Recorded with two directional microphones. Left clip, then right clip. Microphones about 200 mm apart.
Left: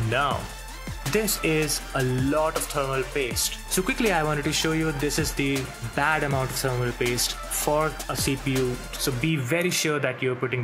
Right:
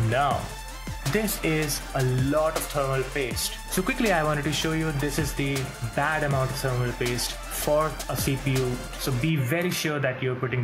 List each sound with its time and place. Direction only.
0.1 s speech: 10° left (ahead or behind)
4.4 s speech: 15° left (ahead or behind)